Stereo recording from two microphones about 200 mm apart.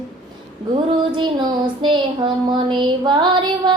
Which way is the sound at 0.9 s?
25° right (ahead or behind).